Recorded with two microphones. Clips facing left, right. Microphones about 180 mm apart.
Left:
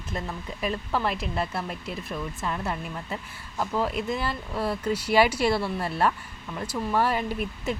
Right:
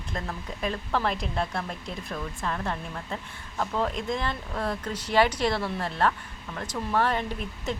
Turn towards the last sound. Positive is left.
turn(degrees=10)  # may be behind; listen again after turning